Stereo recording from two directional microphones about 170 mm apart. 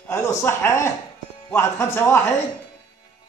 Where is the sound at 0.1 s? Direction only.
15° left (ahead or behind).